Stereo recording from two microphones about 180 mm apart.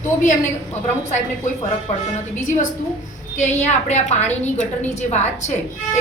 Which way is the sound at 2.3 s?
45° left (ahead or behind).